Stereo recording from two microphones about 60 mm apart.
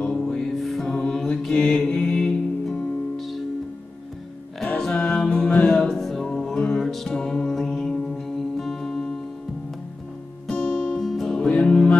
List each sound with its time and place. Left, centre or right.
0.0 s music: centre
1.7 s mantra: centre
2.6 s music: centre
4.6 s music: centre
10.5 s music: centre
11.1 s music: centre
11.3 s music: centre